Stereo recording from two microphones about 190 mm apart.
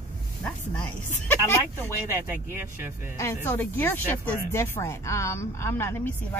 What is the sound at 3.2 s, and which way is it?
Speech, 15° left (ahead or behind).